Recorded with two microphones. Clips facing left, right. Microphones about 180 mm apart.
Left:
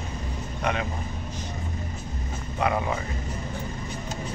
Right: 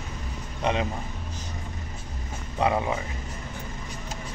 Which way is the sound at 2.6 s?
30° right (ahead or behind).